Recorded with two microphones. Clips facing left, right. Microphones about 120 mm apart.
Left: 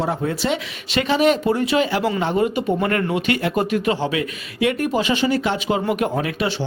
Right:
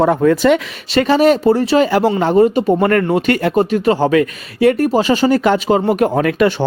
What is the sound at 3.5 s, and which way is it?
Speech, 35° right (ahead or behind).